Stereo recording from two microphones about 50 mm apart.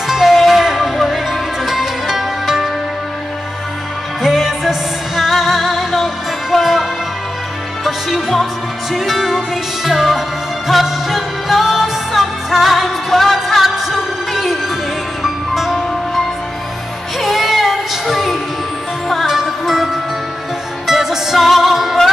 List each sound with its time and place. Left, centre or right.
0.0 s music: centre
4.2 s music: centre
17.2 s music: centre